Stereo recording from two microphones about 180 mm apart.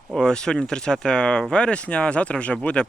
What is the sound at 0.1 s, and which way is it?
Speech, centre (ahead or behind).